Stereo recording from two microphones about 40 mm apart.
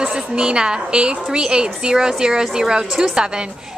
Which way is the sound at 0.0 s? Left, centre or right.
Right.